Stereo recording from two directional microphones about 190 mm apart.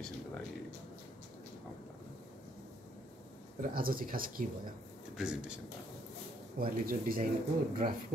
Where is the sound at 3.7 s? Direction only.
50° right (ahead or behind).